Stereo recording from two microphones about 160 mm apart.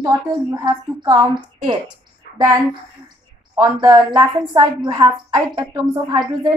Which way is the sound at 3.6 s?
20° right (ahead or behind).